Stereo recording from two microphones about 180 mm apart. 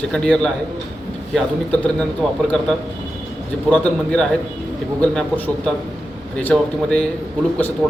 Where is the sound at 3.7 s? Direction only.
5° left (ahead or behind).